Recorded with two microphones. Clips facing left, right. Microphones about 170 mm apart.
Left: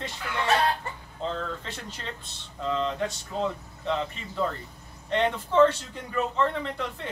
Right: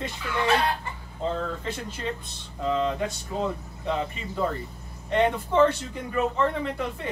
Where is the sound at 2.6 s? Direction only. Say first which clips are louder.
Right 2 dB; 10° right (ahead or behind).